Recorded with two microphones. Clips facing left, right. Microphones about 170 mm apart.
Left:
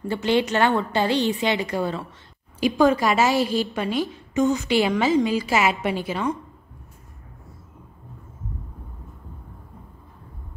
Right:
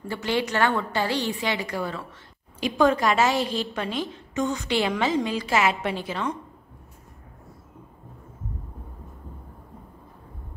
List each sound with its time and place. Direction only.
0.1 s a woman's voice: 25° left (ahead or behind)
2.6 s a woman's voice: 5° left (ahead or behind)